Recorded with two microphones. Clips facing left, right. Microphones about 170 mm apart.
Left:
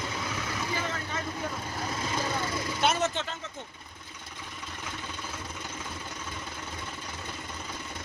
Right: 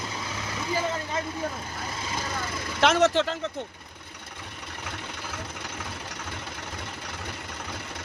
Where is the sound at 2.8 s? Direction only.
70° right (ahead or behind).